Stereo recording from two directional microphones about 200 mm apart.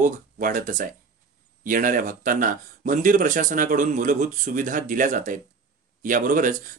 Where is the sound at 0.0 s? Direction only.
40° right (ahead or behind).